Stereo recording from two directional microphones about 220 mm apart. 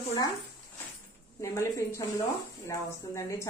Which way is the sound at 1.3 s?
15° left (ahead or behind).